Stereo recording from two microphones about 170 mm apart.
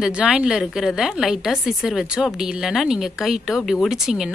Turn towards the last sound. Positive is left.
turn(degrees=0)  # may be behind; listen again after turning